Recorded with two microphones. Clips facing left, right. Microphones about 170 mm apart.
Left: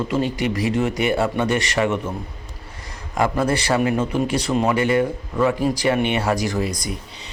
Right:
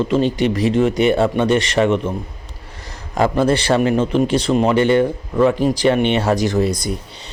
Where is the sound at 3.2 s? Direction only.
30° right (ahead or behind).